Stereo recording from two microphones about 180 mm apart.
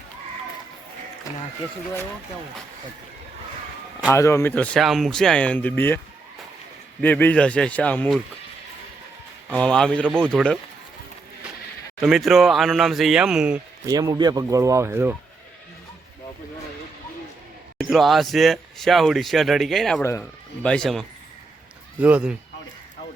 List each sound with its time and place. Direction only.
4.1 s speech: 15° left (ahead or behind)
7.0 s speech: 10° left (ahead or behind)
9.5 s speech: 5° left (ahead or behind)
11.9 s speech: centre (ahead or behind)
13.8 s speech: 20° right (ahead or behind)
17.7 s speech: centre (ahead or behind)
20.0 s speech: 15° left (ahead or behind); by 22.4 s 5° right (ahead or behind)